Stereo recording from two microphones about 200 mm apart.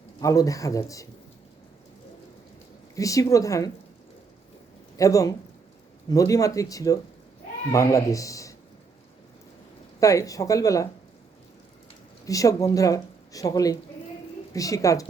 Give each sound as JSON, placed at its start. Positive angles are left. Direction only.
{"t": 0.2, "sound": "speech", "side_deg": 15}
{"t": 2.9, "sound": "speech", "side_deg": 15}
{"t": 4.9, "sound": "speech", "side_deg": 15}
{"t": 10.0, "sound": "speech", "side_deg": 15}
{"t": 12.2, "sound": "speech", "side_deg": 15}